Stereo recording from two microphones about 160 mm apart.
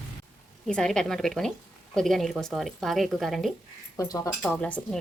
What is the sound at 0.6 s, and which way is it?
Speech, 5° left (ahead or behind).